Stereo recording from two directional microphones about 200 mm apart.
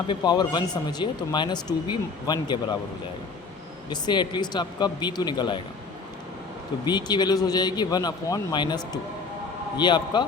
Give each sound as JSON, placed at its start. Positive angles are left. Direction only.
{"t": 0.1, "sound": "speech", "side_deg": 20}
{"t": 3.8, "sound": "speech", "side_deg": 20}
{"t": 6.8, "sound": "speech", "side_deg": 20}